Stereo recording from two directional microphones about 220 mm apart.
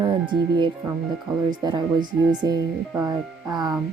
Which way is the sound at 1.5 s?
20° right (ahead or behind).